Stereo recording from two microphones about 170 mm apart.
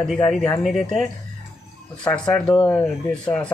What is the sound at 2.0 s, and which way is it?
Speech, 5° left (ahead or behind).